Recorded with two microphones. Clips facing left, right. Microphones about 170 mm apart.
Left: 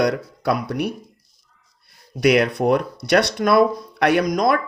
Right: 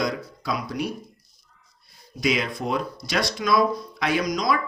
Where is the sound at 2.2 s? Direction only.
70° left (ahead or behind).